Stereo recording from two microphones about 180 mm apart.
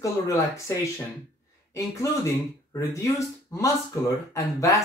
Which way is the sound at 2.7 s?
15° left (ahead or behind).